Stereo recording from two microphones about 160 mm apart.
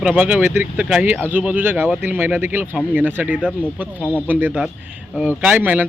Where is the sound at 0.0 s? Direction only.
10° right (ahead or behind).